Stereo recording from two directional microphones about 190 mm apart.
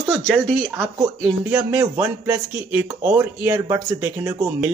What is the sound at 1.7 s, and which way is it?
Speech, 15° right (ahead or behind).